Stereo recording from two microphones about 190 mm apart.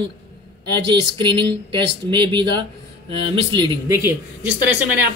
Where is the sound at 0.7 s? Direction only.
25° right (ahead or behind).